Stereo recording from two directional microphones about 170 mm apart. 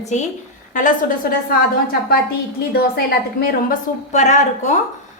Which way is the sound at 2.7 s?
65° left (ahead or behind).